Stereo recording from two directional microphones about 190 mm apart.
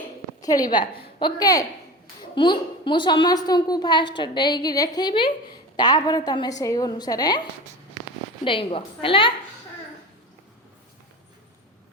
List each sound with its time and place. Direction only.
0.4 s a woman's voice: 20° left (ahead or behind)
8.4 s a woman's voice: 25° left (ahead or behind)